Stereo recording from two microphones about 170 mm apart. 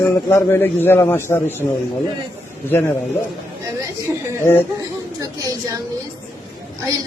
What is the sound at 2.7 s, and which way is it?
Speech, 15° left (ahead or behind).